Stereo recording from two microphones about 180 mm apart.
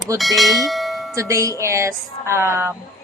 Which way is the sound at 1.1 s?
15° right (ahead or behind).